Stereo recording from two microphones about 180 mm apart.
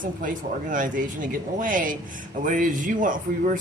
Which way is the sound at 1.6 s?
50° right (ahead or behind).